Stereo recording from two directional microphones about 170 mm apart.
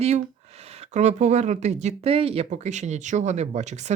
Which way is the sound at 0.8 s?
45° right (ahead or behind).